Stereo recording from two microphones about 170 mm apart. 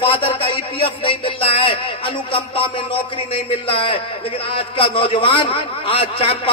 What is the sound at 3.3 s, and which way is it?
A man's voice, 30° left (ahead or behind).